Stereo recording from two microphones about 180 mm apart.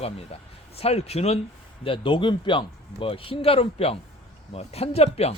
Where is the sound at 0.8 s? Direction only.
35° left (ahead or behind).